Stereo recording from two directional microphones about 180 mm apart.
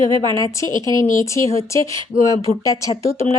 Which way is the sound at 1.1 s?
15° left (ahead or behind).